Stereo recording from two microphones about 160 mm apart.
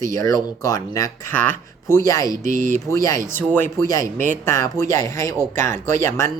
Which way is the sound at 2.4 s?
55° right (ahead or behind).